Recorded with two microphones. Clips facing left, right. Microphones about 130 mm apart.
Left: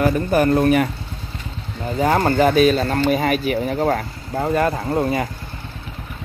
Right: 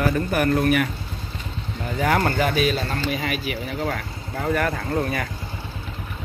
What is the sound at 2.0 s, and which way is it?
Speech, 30° left (ahead or behind).